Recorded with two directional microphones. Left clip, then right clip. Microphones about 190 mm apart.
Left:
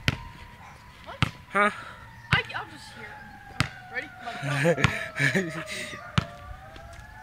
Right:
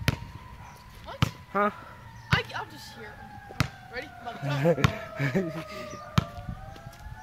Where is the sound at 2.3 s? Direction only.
20° right (ahead or behind).